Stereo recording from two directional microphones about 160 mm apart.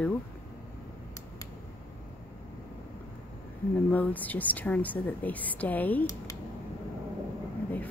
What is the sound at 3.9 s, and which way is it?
Speech, 10° left (ahead or behind).